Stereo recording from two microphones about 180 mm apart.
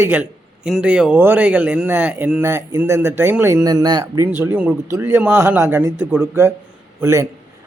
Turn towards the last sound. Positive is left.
turn(degrees=-15)  # may be behind; listen again after turning